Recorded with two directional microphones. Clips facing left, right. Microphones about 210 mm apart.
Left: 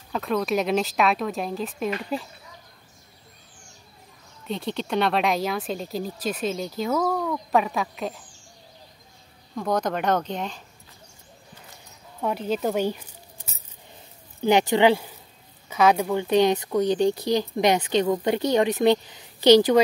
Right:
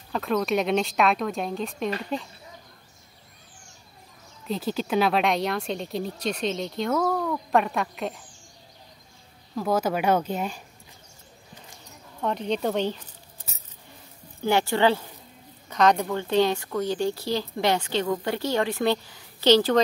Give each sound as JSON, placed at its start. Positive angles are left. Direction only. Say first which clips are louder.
{"t": 0.1, "sound": "speech", "louder": "even", "side_deg": 0}
{"t": 4.5, "sound": "speech", "louder": "right 1 dB", "side_deg": 0}
{"t": 9.6, "sound": "speech", "louder": "right 1 dB", "side_deg": -5}
{"t": 12.2, "sound": "speech", "louder": "left 1 dB", "side_deg": 5}
{"t": 14.4, "sound": "speech", "louder": "left 3 dB", "side_deg": 20}